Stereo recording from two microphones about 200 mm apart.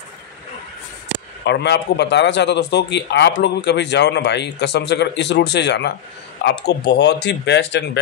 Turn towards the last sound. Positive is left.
turn(degrees=60)  # may be behind; listen again after turning